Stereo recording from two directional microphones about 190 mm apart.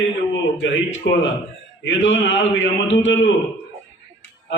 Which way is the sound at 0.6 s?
75° left (ahead or behind).